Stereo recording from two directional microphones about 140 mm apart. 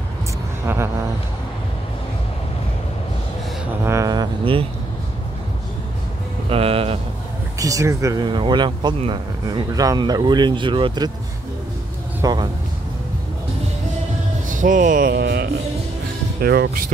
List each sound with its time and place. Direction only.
3.8 s speech: 20° right (ahead or behind)
6.5 s speech: 45° right (ahead or behind)
7.5 s speech: 25° right (ahead or behind)
12.2 s speech: 30° right (ahead or behind)
14.5 s speech: 70° right (ahead or behind)
16.3 s speech: 90° right